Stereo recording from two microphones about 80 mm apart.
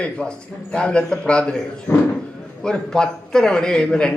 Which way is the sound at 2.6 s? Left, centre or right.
Centre.